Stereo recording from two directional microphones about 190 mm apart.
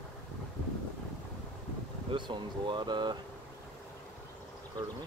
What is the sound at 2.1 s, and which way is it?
Speech, 25° right (ahead or behind).